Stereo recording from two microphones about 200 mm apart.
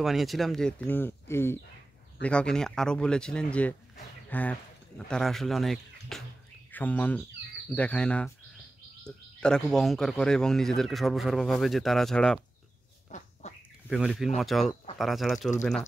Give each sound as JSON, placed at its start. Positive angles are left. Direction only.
{"t": 0.0, "sound": "speech", "side_deg": 0}
{"t": 13.1, "sound": "bird", "side_deg": 35}
{"t": 13.8, "sound": "speech", "side_deg": 0}